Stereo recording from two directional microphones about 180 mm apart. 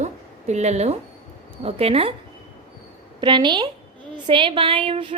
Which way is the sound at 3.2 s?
25° right (ahead or behind).